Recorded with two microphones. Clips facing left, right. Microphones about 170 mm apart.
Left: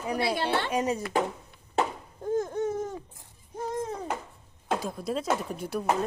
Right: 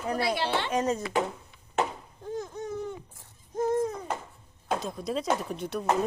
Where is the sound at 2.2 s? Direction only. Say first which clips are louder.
Left 7 dB; 50° left (ahead or behind).